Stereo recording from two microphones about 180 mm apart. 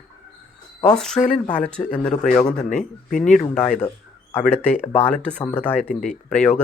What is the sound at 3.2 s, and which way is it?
Speech, 5° left (ahead or behind).